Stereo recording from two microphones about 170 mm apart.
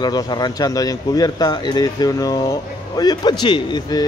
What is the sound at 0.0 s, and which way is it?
Speech, 25° left (ahead or behind).